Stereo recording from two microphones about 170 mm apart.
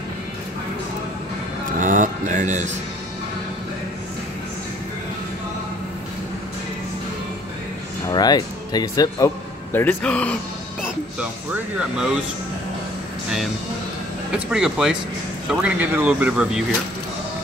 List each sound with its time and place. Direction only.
1.7 s a sound: 50° right (ahead or behind)
8.1 s speech: 25° left (ahead or behind); by 10.3 s 10° left (ahead or behind)
14.3 s speech: 5° right (ahead or behind)